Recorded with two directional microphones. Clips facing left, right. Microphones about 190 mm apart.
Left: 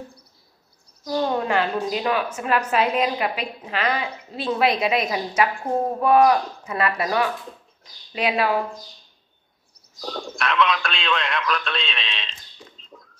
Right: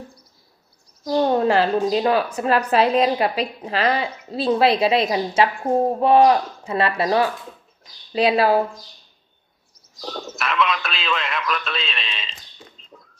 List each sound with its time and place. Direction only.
1.0 s a woman's voice: 35° right (ahead or behind)
10.0 s a man's voice: 5° right (ahead or behind)